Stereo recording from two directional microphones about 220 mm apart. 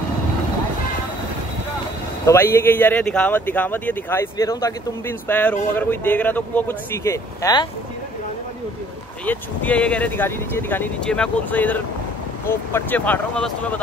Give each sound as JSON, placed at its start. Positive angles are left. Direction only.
{"t": 2.2, "sound": "speech", "side_deg": 10}
{"t": 9.2, "sound": "speech", "side_deg": 5}